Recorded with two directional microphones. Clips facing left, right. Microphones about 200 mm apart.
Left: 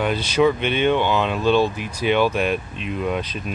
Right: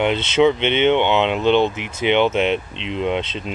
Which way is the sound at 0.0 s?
25° right (ahead or behind).